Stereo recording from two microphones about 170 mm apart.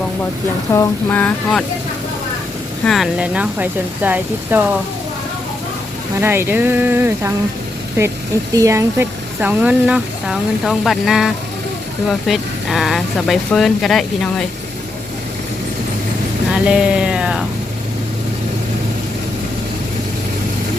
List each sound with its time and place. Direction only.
0.7 s a sound: 15° left (ahead or behind)
2.8 s speech: centre (ahead or behind)
6.1 s speech: 15° right (ahead or behind); by 14.4 s centre (ahead or behind)
16.5 s speech: 5° right (ahead or behind)